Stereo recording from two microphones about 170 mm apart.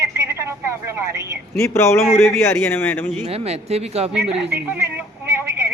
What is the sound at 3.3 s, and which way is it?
Speech, 35° right (ahead or behind).